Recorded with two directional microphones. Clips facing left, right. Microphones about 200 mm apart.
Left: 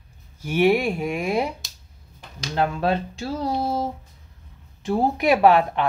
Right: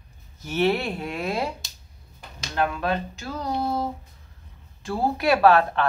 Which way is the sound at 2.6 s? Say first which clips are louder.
Left 3 dB; 30° left (ahead or behind).